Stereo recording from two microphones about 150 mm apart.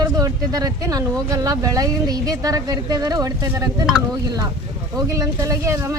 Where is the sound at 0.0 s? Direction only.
25° right (ahead or behind).